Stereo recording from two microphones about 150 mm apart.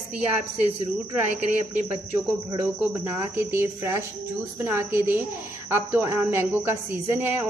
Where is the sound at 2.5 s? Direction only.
15° right (ahead or behind).